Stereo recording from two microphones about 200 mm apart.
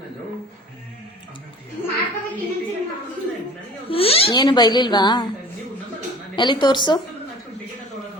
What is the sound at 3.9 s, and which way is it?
Speech, 30° left (ahead or behind).